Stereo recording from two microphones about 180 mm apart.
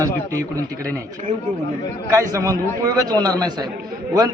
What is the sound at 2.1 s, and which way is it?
A man's voice, 20° right (ahead or behind).